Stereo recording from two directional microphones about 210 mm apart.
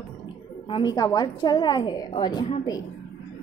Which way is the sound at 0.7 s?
20° left (ahead or behind).